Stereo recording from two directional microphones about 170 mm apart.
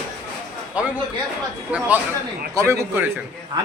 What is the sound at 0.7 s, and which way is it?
A man's voice, 5° right (ahead or behind).